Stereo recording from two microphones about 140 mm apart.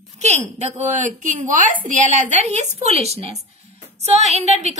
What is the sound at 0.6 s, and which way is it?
A woman's voice, 60° right (ahead or behind).